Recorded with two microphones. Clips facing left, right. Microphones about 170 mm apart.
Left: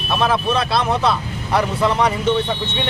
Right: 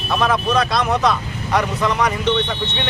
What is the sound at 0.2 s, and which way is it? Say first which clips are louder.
Speech: right 1 dB; 30° left (ahead or behind).